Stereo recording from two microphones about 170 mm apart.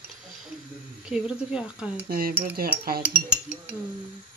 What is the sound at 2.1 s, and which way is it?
Speech, 60° right (ahead or behind).